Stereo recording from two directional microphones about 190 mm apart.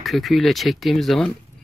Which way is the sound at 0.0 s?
Centre (ahead or behind).